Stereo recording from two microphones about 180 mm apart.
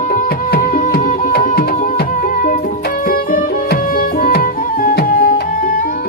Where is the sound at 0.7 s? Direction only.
50° left (ahead or behind).